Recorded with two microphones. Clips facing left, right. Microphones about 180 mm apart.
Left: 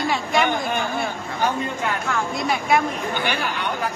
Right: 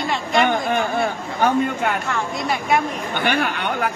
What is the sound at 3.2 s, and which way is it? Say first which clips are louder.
Speech: right 8 dB; 60° right (ahead or behind).